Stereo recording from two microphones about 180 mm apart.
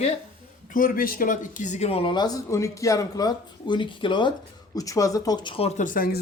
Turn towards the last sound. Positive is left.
turn(degrees=50)  # may be behind; listen again after turning